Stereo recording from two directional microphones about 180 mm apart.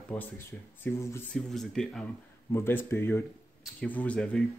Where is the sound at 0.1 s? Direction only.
10° left (ahead or behind).